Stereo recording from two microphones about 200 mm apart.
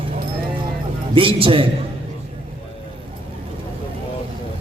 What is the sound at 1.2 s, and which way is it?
Speech, 25° right (ahead or behind).